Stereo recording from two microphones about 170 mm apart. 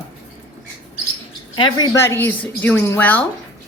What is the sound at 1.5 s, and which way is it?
Speech, 30° left (ahead or behind).